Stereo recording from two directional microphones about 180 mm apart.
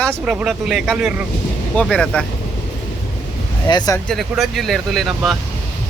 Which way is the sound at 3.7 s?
20° left (ahead or behind).